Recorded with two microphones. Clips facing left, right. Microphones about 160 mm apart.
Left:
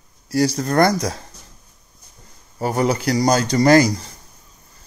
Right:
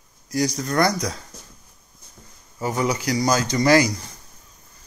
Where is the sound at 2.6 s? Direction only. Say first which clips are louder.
Left 4 dB; 55° left (ahead or behind).